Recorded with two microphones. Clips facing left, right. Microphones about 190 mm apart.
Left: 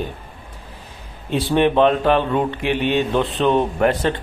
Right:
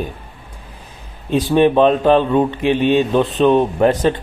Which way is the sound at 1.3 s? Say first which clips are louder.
Right 4 dB; 15° right (ahead or behind).